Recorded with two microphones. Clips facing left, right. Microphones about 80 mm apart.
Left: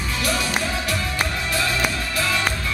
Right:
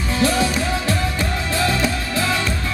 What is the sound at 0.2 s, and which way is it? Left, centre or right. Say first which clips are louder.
Music: right 6 dB; right.